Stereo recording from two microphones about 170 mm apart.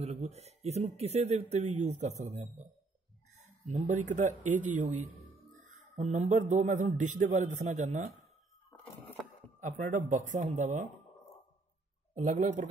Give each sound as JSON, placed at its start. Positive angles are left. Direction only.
{"t": 0.0, "sound": "a man's voice", "side_deg": -40}
{"t": 9.6, "sound": "a man's voice", "side_deg": -45}
{"t": 12.2, "sound": "a man's voice", "side_deg": -45}